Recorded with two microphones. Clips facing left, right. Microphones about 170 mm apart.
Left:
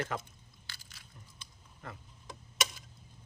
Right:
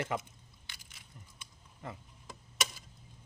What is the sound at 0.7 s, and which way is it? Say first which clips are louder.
Crushing: left 2 dB; 20° right (ahead or behind).